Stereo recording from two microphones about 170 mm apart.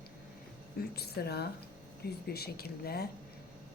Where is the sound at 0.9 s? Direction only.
70° left (ahead or behind).